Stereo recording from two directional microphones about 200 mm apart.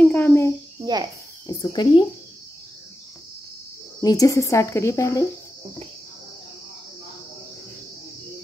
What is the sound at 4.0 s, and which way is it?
A woman's voice, 15° left (ahead or behind).